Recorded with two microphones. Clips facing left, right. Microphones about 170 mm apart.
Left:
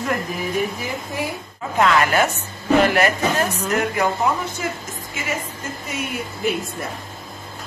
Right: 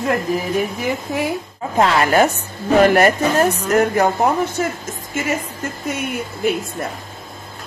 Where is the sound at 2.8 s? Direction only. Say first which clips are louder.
Right 8 dB; 45° right (ahead or behind).